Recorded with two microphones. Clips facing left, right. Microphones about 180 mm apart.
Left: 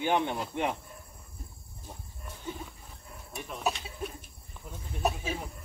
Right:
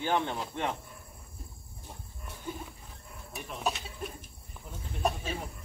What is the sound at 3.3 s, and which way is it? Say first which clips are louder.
Speech: left 1 dB; centre (ahead or behind).